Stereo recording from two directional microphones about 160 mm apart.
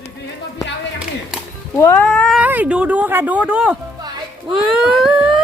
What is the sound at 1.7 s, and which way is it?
Speech, 15° left (ahead or behind).